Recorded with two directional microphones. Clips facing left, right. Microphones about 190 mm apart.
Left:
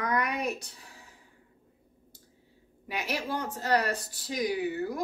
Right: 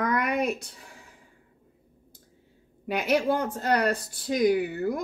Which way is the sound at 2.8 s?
60° right (ahead or behind).